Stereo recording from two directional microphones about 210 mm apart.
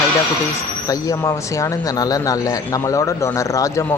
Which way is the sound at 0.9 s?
15° left (ahead or behind).